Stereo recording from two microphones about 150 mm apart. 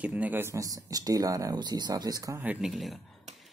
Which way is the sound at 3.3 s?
50° right (ahead or behind).